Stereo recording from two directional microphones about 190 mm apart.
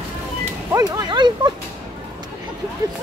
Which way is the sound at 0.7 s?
20° right (ahead or behind).